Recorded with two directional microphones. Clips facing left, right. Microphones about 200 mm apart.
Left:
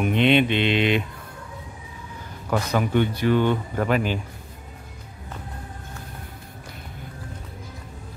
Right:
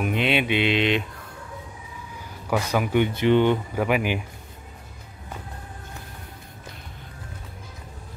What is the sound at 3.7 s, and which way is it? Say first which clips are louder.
Speech: even; 10° right (ahead or behind).